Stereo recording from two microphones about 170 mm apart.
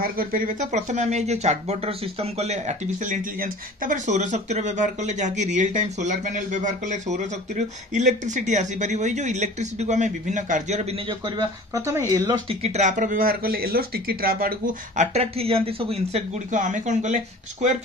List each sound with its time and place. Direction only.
0.0 s speech: 55° right (ahead or behind); by 11.0 s 40° right (ahead or behind)
11.1 s speech: 25° right (ahead or behind)
12.4 s speech: 40° right (ahead or behind)
16.5 s speech: 50° right (ahead or behind)